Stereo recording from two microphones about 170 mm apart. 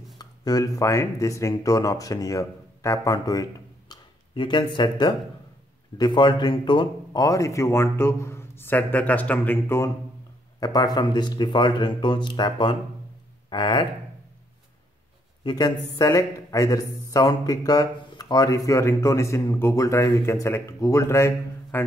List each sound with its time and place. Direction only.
0.2 s a man's voice: 20° left (ahead or behind)
15.4 s a man's voice: 25° left (ahead or behind)